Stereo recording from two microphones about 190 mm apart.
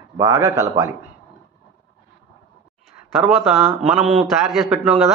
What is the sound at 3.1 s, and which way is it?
Speech, centre (ahead or behind).